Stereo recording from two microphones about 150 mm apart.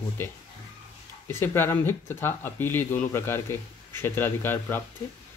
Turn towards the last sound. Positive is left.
turn(degrees=15)  # may be behind; listen again after turning